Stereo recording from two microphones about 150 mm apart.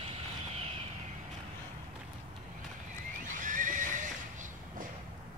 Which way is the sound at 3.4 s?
60° right (ahead or behind).